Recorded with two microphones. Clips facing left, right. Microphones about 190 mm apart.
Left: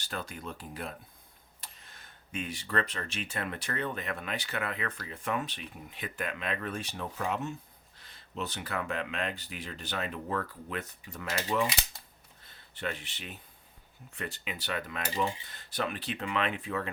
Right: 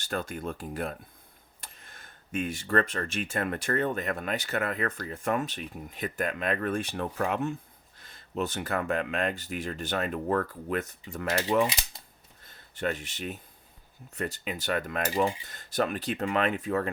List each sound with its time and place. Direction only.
0.0 s speech: 50° right (ahead or behind)
12.4 s speech: 45° right (ahead or behind)